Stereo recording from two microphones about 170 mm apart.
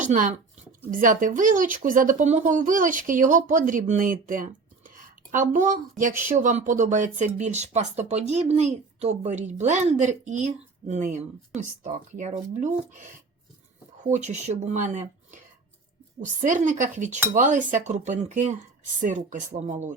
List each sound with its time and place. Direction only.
0.0 s speech: 50° right (ahead or behind)